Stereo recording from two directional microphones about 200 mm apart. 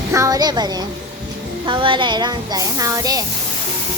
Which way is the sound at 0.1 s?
15° right (ahead or behind).